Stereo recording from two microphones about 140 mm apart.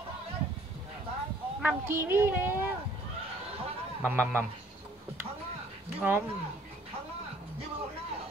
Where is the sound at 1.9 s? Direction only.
15° right (ahead or behind).